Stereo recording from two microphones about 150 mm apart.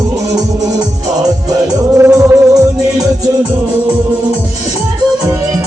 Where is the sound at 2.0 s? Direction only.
20° right (ahead or behind).